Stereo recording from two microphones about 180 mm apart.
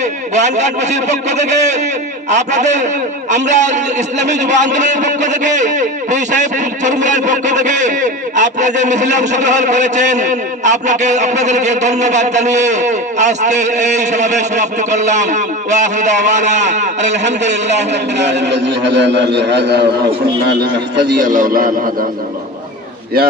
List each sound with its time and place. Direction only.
0.3 s a man's voice: 40° right (ahead or behind)
18.1 s a man's voice: 75° right (ahead or behind)
21.2 s a man's voice: 45° right (ahead or behind)